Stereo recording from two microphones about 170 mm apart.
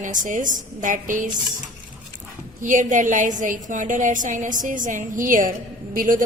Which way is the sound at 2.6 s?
50° right (ahead or behind).